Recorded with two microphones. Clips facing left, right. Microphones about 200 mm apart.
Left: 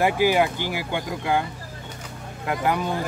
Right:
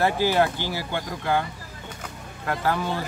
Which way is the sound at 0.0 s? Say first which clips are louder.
Left 2 dB; 15° left (ahead or behind).